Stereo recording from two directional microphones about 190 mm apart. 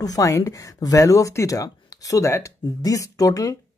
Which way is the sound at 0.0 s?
20° left (ahead or behind).